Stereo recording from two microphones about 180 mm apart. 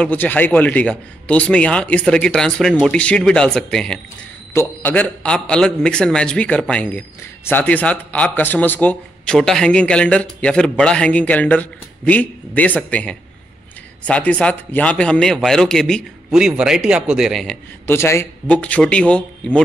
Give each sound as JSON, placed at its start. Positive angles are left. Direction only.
{"t": 0.0, "sound": "speech", "side_deg": 10}
{"t": 17.8, "sound": "speech", "side_deg": 15}